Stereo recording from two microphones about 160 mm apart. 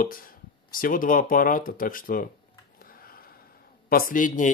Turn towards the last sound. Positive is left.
turn(degrees=55)  # may be behind; listen again after turning